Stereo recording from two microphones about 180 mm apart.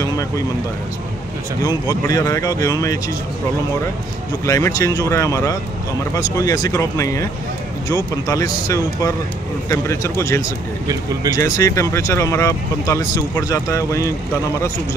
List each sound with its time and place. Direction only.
1.9 s speech: 20° left (ahead or behind)
4.5 s speech: 15° left (ahead or behind)